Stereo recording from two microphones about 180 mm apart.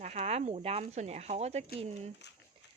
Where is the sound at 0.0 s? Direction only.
35° right (ahead or behind).